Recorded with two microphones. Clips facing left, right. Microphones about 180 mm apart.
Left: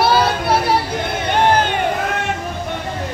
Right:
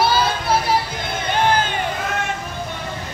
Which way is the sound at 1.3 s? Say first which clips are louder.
Left 3 dB; 65° left (ahead or behind).